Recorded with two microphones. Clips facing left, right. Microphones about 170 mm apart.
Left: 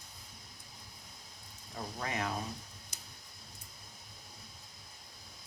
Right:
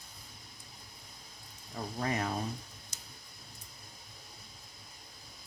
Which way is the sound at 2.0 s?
40° right (ahead or behind).